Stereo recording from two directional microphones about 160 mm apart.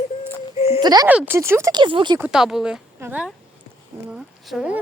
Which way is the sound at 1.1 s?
10° right (ahead or behind).